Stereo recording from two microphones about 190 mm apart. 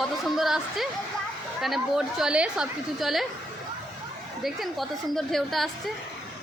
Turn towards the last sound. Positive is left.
turn(degrees=0)  # may be behind; listen again after turning